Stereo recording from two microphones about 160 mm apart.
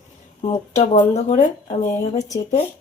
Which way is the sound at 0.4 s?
45° left (ahead or behind).